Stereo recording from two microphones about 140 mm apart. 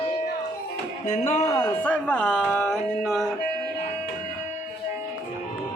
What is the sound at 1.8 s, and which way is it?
Speech, 10° left (ahead or behind).